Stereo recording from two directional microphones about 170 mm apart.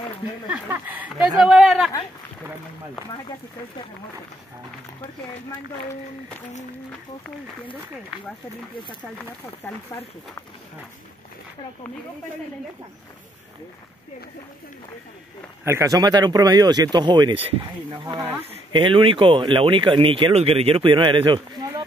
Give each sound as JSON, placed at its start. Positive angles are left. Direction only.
{"t": 0.7, "sound": "speech", "side_deg": -10}
{"t": 15.6, "sound": "speech", "side_deg": -15}
{"t": 18.0, "sound": "speech", "side_deg": -15}
{"t": 18.7, "sound": "speech", "side_deg": -30}